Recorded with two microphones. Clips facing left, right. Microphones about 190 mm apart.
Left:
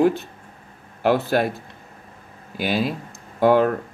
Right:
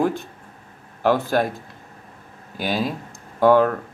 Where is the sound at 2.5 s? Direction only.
45° right (ahead or behind).